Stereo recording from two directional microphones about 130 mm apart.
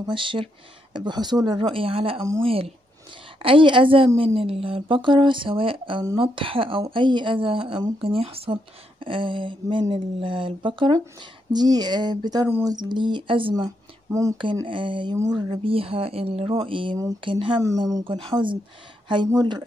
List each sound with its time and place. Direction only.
0.0 s speech: 40° right (ahead or behind)
13.7 s speech: 25° right (ahead or behind)
14.4 s speech: 40° right (ahead or behind)
17.6 s speech: 25° right (ahead or behind)